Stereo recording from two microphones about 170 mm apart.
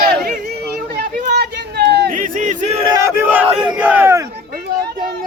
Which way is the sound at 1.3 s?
75° right (ahead or behind).